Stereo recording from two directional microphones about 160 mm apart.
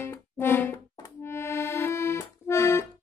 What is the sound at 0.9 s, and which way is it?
Accordion, 20° left (ahead or behind).